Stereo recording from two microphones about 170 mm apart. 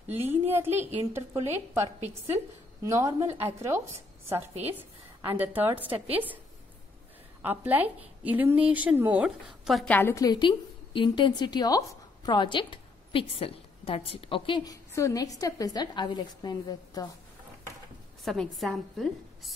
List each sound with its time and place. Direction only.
0.1 s a woman's voice: 10° right (ahead or behind)
7.4 s a woman's voice: 10° right (ahead or behind)
9.8 s a woman's voice: 10° left (ahead or behind)
18.2 s a woman's voice: centre (ahead or behind)